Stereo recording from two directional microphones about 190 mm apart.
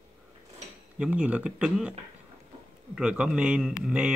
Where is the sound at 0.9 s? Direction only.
5° right (ahead or behind).